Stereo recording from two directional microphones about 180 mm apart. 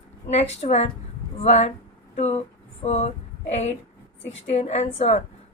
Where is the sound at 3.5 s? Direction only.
35° left (ahead or behind).